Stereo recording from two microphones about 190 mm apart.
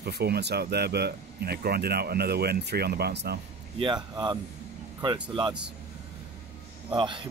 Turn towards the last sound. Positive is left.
turn(degrees=-25)  # may be behind; listen again after turning